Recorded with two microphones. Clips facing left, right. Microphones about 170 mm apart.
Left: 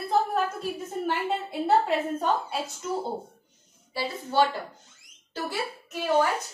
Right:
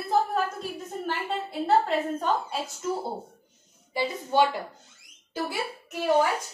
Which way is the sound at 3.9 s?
15° right (ahead or behind).